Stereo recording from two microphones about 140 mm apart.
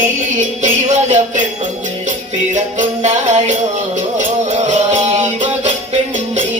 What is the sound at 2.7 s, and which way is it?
Music, 55° right (ahead or behind).